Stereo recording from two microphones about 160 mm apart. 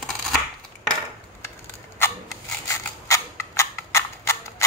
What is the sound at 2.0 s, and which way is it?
Rub, 15° left (ahead or behind).